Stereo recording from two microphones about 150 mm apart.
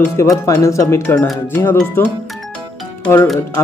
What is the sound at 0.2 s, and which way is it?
Speech, 20° left (ahead or behind).